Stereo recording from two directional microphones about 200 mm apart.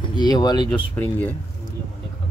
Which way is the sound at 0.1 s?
20° left (ahead or behind).